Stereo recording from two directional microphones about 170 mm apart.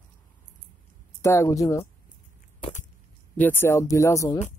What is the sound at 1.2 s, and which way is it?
Speech, 15° left (ahead or behind).